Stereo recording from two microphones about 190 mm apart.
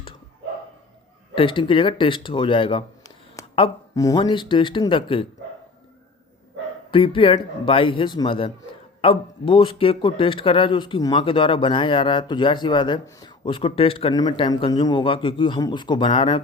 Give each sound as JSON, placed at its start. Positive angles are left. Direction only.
{"t": 1.4, "sound": "speech", "side_deg": 25}
{"t": 6.9, "sound": "speech", "side_deg": 30}